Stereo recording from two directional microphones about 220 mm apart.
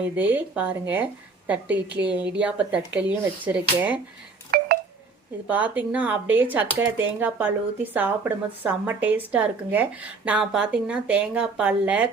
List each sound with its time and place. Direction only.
0.2 s speech: 10° right (ahead or behind)
4.5 s wind chime: 45° right (ahead or behind)
5.5 s speech: 5° right (ahead or behind)